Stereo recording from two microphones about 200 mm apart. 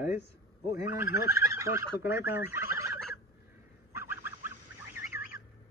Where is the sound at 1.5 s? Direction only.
15° right (ahead or behind).